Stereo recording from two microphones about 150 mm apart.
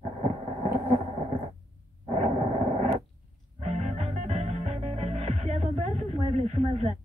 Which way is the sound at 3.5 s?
45° right (ahead or behind).